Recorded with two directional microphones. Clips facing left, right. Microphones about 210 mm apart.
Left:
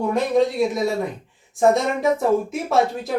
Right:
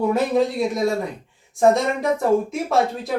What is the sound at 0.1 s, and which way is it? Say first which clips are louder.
Speech: even; centre (ahead or behind).